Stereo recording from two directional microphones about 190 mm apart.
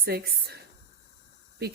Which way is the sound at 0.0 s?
55° right (ahead or behind).